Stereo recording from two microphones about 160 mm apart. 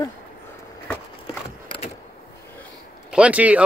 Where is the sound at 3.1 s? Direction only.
10° right (ahead or behind).